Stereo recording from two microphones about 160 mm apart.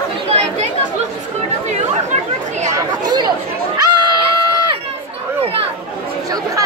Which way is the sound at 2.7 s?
25° right (ahead or behind).